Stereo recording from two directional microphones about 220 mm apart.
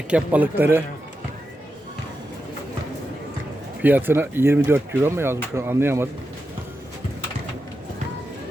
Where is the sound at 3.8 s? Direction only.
10° right (ahead or behind).